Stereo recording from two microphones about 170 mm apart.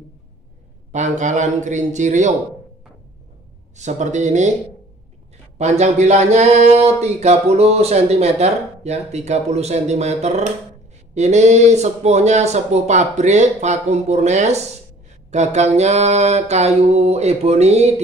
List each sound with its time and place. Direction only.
0.9 s a man's voice: 45° right (ahead or behind)
3.7 s a man's voice: 45° right (ahead or behind)
5.6 s speech: 40° right (ahead or behind)